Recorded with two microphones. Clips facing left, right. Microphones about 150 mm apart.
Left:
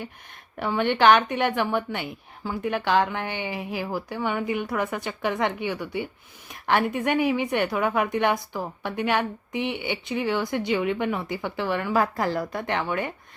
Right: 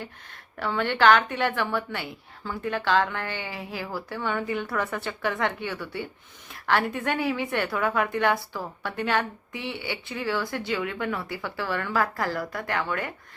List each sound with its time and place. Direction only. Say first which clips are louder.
0.0 s a woman's voice: left 2 dB; 15° left (ahead or behind)